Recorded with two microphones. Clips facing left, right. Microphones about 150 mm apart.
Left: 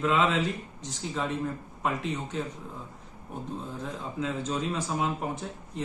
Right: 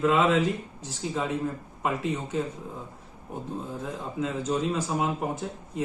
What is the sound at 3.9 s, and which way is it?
A man's voice, 5° right (ahead or behind).